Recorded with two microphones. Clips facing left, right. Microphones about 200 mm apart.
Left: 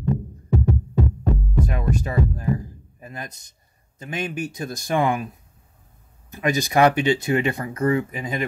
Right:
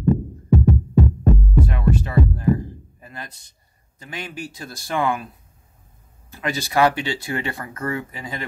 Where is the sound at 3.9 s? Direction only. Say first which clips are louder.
Left 5 dB; 20° left (ahead or behind).